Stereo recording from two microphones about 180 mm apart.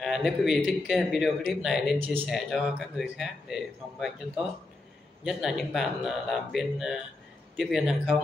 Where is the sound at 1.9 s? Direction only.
10° right (ahead or behind).